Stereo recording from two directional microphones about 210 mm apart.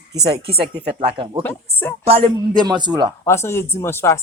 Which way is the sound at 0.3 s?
30° right (ahead or behind).